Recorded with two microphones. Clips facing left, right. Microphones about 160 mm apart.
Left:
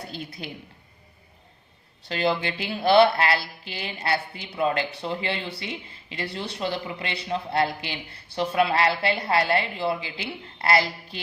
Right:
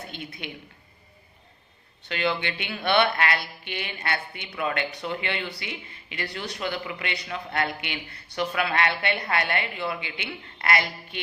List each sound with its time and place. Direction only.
0.1 s speech: 35° left (ahead or behind)
2.0 s speech: 35° left (ahead or behind)